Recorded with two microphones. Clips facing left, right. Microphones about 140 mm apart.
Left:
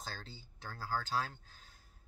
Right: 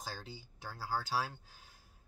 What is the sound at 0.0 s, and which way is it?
Speech, 10° right (ahead or behind).